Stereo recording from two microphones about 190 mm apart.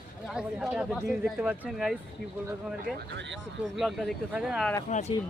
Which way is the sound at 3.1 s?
70° right (ahead or behind).